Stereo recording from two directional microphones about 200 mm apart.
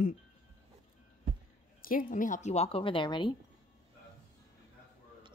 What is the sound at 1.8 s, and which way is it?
Speech, 45° left (ahead or behind).